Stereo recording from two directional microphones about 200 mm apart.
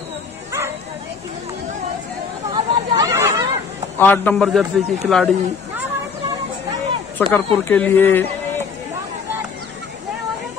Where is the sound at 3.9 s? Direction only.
10° left (ahead or behind).